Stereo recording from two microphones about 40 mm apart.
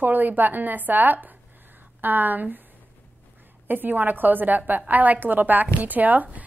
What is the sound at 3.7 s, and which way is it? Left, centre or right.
A woman's voice, right.